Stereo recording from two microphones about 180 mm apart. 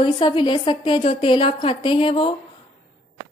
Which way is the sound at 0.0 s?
25° left (ahead or behind).